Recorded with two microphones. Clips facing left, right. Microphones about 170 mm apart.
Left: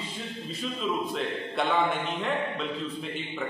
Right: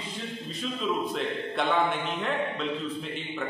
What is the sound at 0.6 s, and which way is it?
Speech, centre (ahead or behind).